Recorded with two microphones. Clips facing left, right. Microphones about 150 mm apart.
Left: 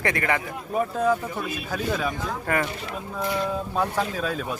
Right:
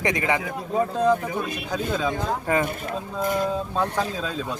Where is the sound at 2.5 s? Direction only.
20° right (ahead or behind).